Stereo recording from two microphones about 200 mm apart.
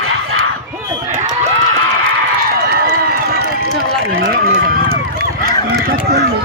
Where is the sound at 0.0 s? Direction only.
90° right.